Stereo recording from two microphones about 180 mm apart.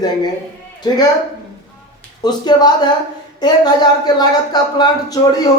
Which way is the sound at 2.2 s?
25° left (ahead or behind).